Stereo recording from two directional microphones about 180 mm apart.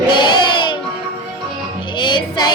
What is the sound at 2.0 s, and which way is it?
Music, 25° left (ahead or behind).